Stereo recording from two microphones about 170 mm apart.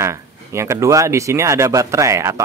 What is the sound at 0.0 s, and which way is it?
Speech, 15° right (ahead or behind).